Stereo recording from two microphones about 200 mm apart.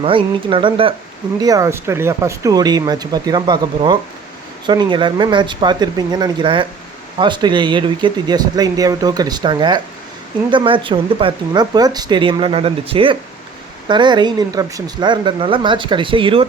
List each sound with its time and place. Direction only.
0.0 s speech: 25° right (ahead or behind)